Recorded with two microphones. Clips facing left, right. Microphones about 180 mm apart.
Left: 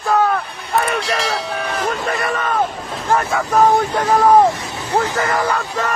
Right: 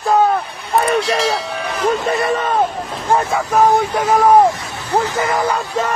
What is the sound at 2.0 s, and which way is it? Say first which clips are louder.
A man's voice: right 3 dB; 25° right (ahead or behind).